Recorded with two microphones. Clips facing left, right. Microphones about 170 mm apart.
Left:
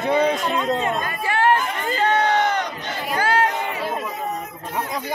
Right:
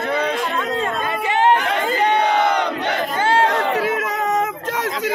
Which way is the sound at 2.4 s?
70° right (ahead or behind).